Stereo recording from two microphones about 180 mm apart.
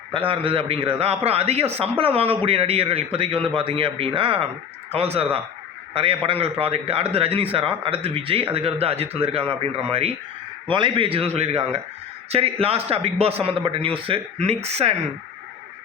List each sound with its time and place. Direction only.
0.1 s a man's voice: 30° right (ahead or behind)